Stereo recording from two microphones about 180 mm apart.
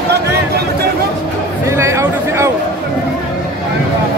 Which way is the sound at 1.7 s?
15° right (ahead or behind).